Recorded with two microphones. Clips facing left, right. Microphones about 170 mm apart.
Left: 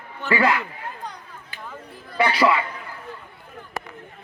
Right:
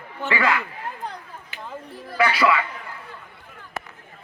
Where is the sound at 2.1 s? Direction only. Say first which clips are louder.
Left 1 dB; 30° left (ahead or behind).